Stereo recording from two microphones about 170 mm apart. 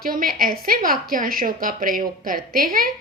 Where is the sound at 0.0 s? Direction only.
55° right (ahead or behind).